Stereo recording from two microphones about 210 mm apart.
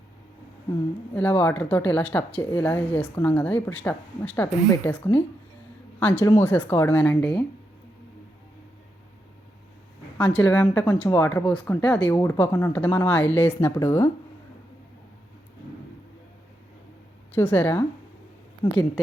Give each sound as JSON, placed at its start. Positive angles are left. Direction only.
{"t": 1.1, "sound": "speech", "side_deg": 10}
{"t": 10.3, "sound": "speech", "side_deg": 5}
{"t": 17.3, "sound": "speech", "side_deg": 10}